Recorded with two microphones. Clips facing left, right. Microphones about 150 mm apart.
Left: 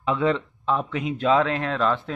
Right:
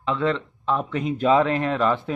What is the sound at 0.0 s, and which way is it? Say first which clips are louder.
Speech: left 1 dB; 10° left (ahead or behind).